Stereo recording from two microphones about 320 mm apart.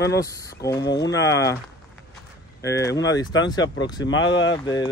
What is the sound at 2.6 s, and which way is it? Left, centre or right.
Speech, centre.